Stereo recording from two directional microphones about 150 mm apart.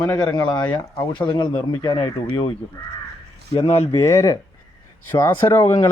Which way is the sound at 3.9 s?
20° left (ahead or behind).